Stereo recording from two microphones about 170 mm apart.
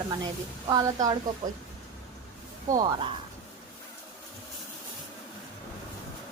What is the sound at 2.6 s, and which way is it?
Speech, 20° right (ahead or behind).